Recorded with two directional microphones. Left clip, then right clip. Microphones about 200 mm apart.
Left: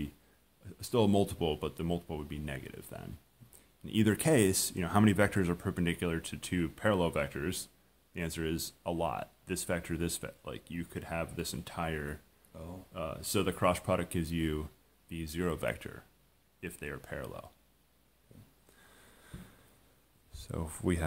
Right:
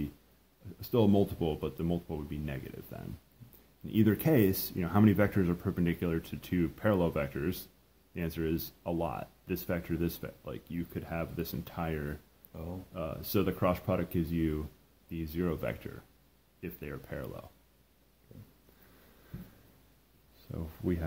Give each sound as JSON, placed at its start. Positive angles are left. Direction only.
{"t": 0.7, "sound": "speech", "side_deg": 15}
{"t": 20.5, "sound": "speech", "side_deg": 35}